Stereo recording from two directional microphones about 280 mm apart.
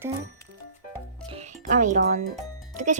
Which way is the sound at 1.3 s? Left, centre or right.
Right.